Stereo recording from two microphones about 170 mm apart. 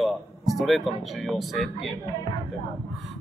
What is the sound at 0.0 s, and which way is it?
Speech, centre (ahead or behind).